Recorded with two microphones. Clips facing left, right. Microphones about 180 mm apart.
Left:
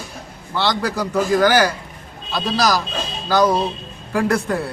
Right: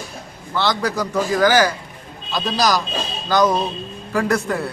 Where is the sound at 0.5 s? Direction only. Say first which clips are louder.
Even; centre (ahead or behind).